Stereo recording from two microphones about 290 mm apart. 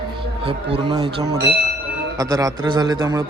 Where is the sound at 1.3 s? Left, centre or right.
Right.